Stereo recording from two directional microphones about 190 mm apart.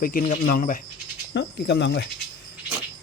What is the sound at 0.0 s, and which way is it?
Speech, 50° left (ahead or behind).